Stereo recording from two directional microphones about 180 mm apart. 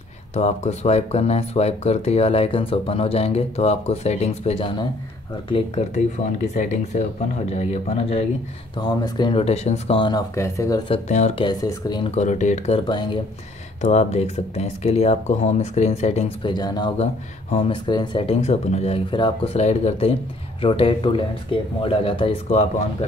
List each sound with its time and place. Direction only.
0.3 s speech: 40° left (ahead or behind)
8.7 s speech: 25° left (ahead or behind)
10.3 s speech: 15° left (ahead or behind)
10.9 s speech: 40° left (ahead or behind)
11.4 s speech: 25° left (ahead or behind)
12.2 s speech: 40° left (ahead or behind); by 13.2 s 25° left (ahead or behind)
13.7 s speech: 40° left (ahead or behind)